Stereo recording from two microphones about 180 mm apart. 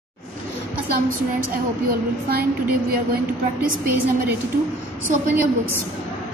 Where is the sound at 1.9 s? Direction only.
55° right (ahead or behind).